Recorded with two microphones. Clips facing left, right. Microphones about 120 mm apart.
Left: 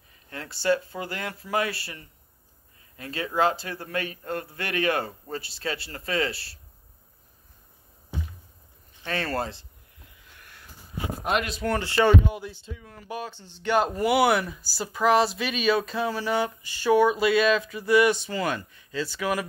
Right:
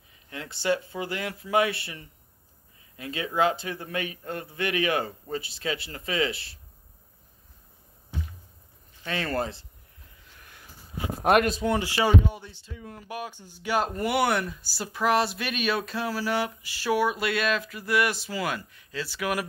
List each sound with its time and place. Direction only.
0.5 s speech: 20° right (ahead or behind)
1.1 s speech: 30° left (ahead or behind)
1.5 s speech: 20° right (ahead or behind)
3.2 s speech: 35° left (ahead or behind)
3.9 s speech: 20° right (ahead or behind)
4.6 s speech: 35° left (ahead or behind)
9.0 s speech: 40° left (ahead or behind)
11.2 s speech: 55° right (ahead or behind)
11.6 s speech: 15° right (ahead or behind)
12.3 s speech: 5° left (ahead or behind)
12.8 s speech: 10° right (ahead or behind)